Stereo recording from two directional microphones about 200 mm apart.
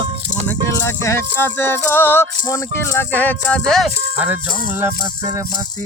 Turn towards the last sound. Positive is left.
turn(degrees=-15)  # may be behind; listen again after turning